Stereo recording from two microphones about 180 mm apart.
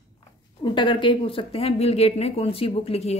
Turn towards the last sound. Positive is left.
turn(degrees=35)  # may be behind; listen again after turning